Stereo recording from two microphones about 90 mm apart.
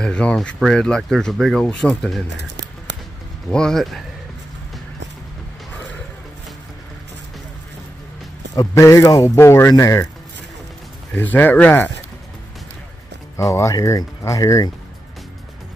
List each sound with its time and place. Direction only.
0.0 s speech: 10° left (ahead or behind)
3.4 s speech: 10° left (ahead or behind)
8.5 s speech: 35° left (ahead or behind)
11.1 s speech: 20° left (ahead or behind)
13.4 s speech: 35° left (ahead or behind)